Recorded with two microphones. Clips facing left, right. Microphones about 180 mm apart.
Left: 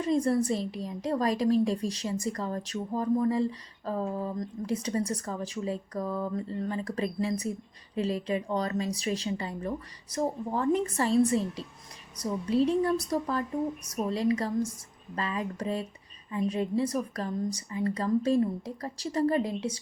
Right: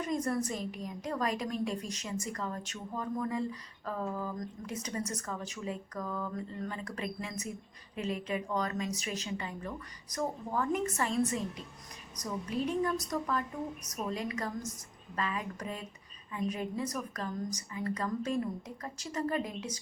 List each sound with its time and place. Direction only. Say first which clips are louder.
0.0 s a woman's voice: left 7 dB; 30° left (ahead or behind)